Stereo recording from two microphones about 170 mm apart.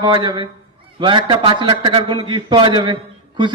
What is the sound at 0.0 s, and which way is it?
A man's voice, 25° right (ahead or behind).